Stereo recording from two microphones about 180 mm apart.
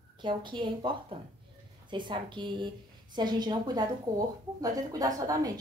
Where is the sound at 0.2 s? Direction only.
25° right (ahead or behind).